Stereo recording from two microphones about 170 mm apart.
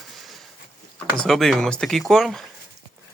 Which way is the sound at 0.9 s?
5° left (ahead or behind).